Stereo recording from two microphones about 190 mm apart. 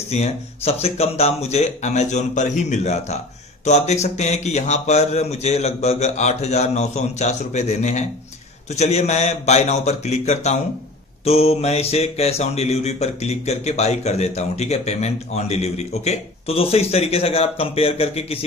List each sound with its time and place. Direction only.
0.1 s mantra: 35° left (ahead or behind)